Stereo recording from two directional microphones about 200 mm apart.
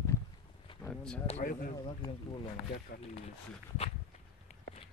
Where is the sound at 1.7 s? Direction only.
20° left (ahead or behind).